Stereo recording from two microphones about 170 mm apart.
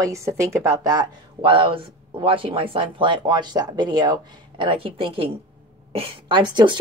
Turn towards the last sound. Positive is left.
turn(degrees=-25)  # may be behind; listen again after turning